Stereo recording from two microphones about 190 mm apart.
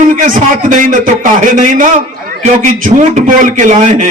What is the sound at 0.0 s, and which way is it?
A man's voice, 45° right (ahead or behind).